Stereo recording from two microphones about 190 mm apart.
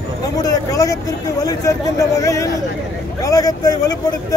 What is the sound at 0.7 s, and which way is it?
A man's voice, 15° left (ahead or behind).